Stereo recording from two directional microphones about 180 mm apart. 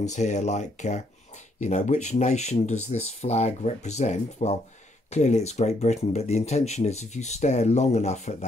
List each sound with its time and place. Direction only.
0.0 s speech: 40° left (ahead or behind)